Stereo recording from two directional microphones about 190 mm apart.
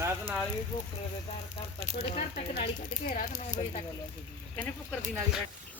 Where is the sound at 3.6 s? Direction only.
30° left (ahead or behind).